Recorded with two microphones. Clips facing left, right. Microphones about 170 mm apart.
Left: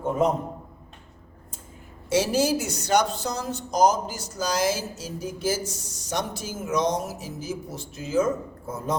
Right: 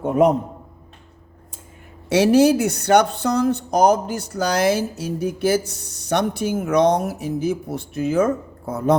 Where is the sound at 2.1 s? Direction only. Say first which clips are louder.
Right 8 dB; 65° right (ahead or behind).